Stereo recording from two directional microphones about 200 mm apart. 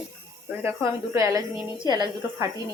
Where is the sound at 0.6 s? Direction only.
15° right (ahead or behind).